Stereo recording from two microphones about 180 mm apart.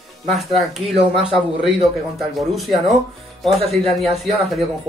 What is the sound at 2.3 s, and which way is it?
A man's voice, centre (ahead or behind).